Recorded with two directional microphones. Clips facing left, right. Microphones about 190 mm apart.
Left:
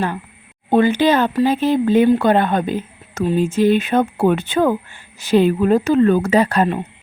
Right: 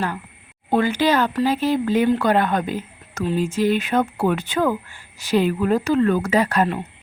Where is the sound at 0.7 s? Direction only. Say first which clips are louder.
Left 4 dB; 20° left (ahead or behind).